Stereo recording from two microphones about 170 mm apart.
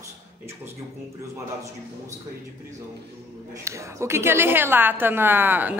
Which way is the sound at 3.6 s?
15° right (ahead or behind).